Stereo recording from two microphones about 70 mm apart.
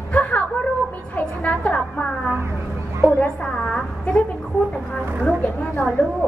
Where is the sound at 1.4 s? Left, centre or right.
Centre.